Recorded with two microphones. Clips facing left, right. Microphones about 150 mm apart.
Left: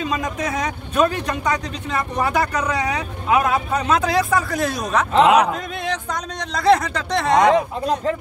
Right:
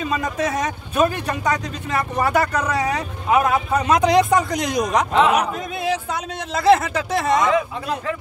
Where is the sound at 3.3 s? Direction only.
Centre (ahead or behind).